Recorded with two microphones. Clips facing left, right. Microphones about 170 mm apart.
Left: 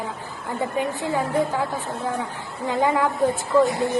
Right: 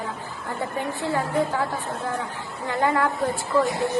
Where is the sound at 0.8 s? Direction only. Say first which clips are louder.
Left 1 dB; 15° left (ahead or behind).